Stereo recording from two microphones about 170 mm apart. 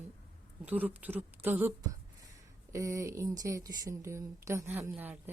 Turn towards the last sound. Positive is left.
turn(degrees=-10)  # may be behind; listen again after turning